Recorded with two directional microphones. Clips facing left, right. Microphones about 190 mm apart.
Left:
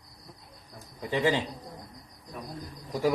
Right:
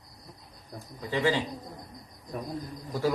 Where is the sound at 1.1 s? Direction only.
20° left (ahead or behind).